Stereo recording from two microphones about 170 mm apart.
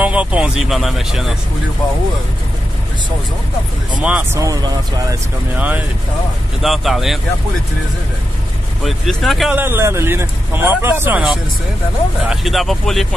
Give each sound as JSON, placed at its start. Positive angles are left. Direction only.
{"t": 0.0, "sound": "speech", "side_deg": -5}
{"t": 4.0, "sound": "speech", "side_deg": -10}
{"t": 4.4, "sound": "speech", "side_deg": -20}
{"t": 8.8, "sound": "speech", "side_deg": 0}
{"t": 9.6, "sound": "speech", "side_deg": -15}
{"t": 12.3, "sound": "speech", "side_deg": 0}